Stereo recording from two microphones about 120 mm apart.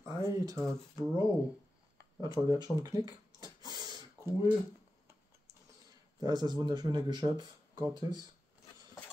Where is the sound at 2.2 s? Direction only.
35° right (ahead or behind).